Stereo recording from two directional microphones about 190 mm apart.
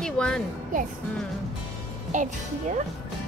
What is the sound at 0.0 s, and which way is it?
Music, 5° left (ahead or behind).